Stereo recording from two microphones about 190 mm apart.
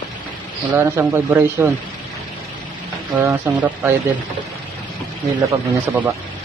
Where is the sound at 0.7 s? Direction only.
10° right (ahead or behind).